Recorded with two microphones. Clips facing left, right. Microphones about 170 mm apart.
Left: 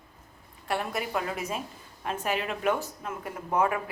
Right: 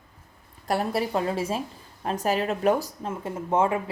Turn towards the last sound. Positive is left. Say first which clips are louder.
# right 3 dB
turn(degrees=-25)  # may be behind; listen again after turning